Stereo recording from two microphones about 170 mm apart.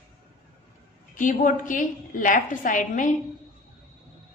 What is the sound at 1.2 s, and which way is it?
A woman's voice, 50° left (ahead or behind).